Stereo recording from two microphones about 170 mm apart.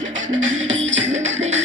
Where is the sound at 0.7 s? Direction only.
90° right.